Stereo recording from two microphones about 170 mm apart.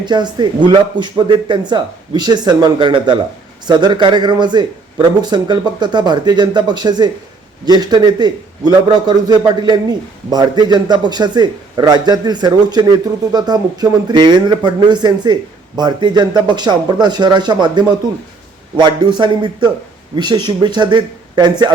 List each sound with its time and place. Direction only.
0.0 s speech: 25° right (ahead or behind)